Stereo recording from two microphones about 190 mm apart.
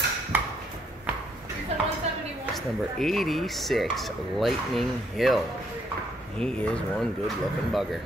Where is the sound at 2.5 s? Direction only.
Centre (ahead or behind).